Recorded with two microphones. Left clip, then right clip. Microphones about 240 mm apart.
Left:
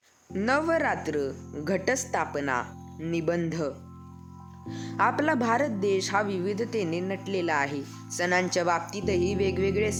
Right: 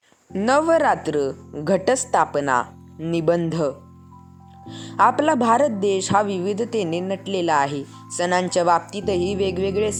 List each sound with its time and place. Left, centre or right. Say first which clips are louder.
0.3 s speech: right 8 dB; centre
4.7 s speech: right 8 dB; centre